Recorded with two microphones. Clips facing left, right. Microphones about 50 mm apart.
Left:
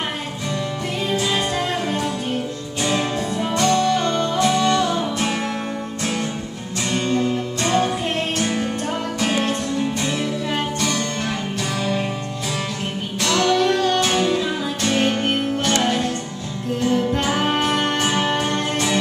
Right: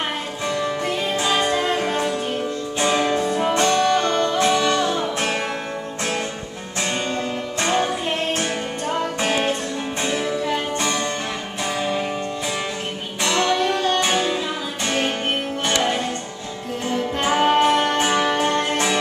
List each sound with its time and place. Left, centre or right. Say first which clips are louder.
1.1 s music: right 1 dB; right
6.9 s music: left 5 dB; right
8.4 s music: left 2 dB; right
10.8 s music: even; right
13.2 s music: left 2 dB; right